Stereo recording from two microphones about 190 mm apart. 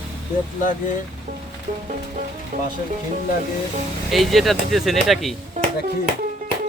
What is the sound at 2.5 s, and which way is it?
Speech, 45° right (ahead or behind).